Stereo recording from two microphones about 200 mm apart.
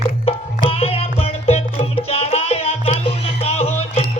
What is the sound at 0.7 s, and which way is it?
Music, 30° left (ahead or behind).